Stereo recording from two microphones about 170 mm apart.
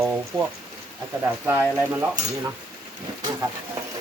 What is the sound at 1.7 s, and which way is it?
Speech, 10° right (ahead or behind).